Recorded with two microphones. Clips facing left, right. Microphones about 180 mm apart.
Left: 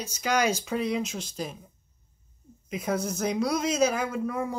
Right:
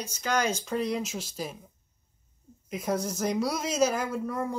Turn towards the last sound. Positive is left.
turn(degrees=5)  # may be behind; listen again after turning